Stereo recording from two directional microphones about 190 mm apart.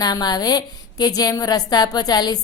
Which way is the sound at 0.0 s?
20° left (ahead or behind).